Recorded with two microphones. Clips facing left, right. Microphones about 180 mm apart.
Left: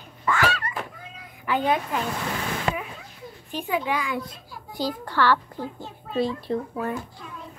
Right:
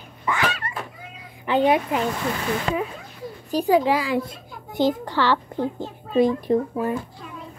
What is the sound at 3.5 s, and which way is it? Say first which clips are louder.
Speech: right 8 dB; 35° right (ahead or behind).